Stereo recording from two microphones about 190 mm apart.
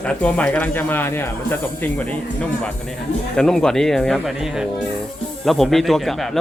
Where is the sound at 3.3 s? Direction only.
5° left (ahead or behind).